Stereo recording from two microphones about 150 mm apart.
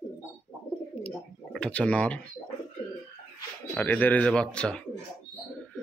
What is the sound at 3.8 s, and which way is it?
Speech, 10° left (ahead or behind).